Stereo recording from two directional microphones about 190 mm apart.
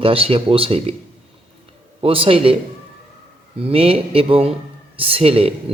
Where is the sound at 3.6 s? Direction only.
30° right (ahead or behind).